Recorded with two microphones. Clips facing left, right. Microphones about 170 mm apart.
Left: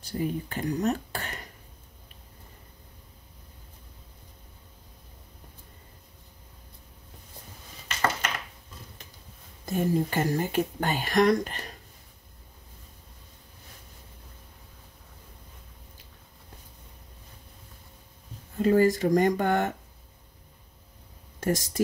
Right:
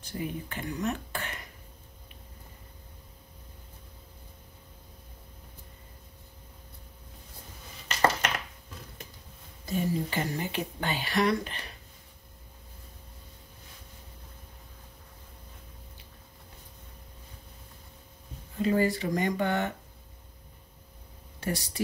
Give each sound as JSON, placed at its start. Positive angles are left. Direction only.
{"t": 0.0, "sound": "speech", "side_deg": 35}
{"t": 9.7, "sound": "speech", "side_deg": 45}
{"t": 18.6, "sound": "speech", "side_deg": 45}
{"t": 21.4, "sound": "speech", "side_deg": 45}